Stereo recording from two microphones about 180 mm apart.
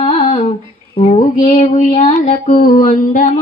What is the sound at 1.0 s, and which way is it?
Speech, 35° left (ahead or behind).